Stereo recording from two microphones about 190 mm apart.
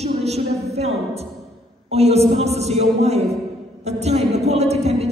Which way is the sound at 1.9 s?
35° right (ahead or behind).